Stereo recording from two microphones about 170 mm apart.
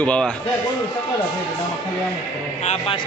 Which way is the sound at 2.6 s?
40° left (ahead or behind).